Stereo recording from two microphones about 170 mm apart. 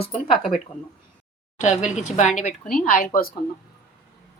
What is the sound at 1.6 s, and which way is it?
Speech, 45° left (ahead or behind).